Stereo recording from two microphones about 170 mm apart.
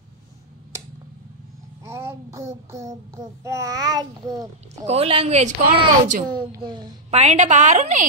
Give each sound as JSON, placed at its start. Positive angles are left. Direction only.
{"t": 1.9, "sound": "child singing", "side_deg": -15}
{"t": 4.8, "sound": "speech", "side_deg": -35}
{"t": 6.3, "sound": "child singing", "side_deg": -25}
{"t": 7.1, "sound": "a woman's voice", "side_deg": -40}